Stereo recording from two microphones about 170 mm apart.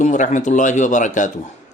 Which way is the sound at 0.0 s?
45° left (ahead or behind).